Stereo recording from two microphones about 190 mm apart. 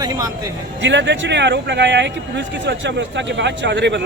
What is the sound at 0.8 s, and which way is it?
Speech, 70° right (ahead or behind).